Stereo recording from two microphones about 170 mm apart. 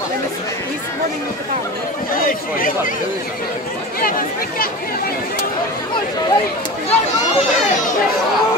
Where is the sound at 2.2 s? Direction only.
55° left (ahead or behind).